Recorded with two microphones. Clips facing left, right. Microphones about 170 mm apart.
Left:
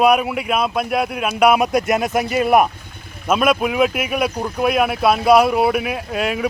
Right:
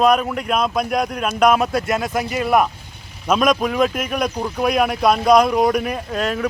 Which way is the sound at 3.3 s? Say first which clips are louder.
Even; 5° left (ahead or behind).